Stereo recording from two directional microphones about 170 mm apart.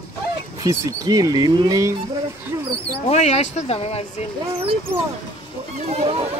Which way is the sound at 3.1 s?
40° left (ahead or behind).